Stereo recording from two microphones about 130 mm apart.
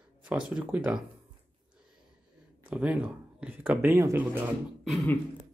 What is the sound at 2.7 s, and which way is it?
Speech, 10° right (ahead or behind).